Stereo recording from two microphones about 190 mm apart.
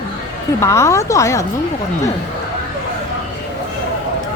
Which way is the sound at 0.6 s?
15° left (ahead or behind).